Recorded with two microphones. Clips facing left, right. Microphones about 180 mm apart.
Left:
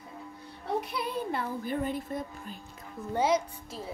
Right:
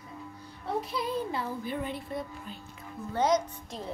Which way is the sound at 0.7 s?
65° left (ahead or behind).